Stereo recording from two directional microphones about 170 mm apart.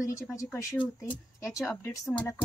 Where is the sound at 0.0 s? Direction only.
20° left (ahead or behind).